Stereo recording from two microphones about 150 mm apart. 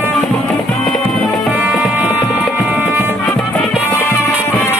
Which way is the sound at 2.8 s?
15° right (ahead or behind).